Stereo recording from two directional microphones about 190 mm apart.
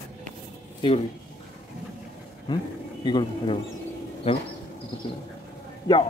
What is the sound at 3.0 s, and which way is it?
Speech, 25° left (ahead or behind).